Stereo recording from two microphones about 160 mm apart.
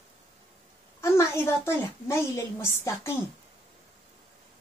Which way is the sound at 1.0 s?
15° left (ahead or behind).